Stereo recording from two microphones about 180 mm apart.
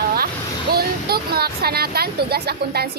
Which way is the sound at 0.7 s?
60° right (ahead or behind).